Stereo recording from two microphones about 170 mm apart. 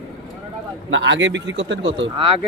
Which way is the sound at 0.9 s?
90° right.